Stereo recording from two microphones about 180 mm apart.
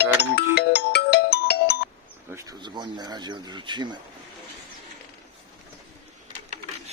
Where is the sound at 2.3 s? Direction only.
20° right (ahead or behind).